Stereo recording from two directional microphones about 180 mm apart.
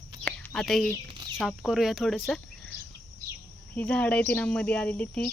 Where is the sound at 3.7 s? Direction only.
10° left (ahead or behind).